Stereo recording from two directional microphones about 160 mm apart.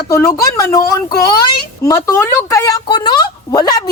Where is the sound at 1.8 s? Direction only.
20° left (ahead or behind).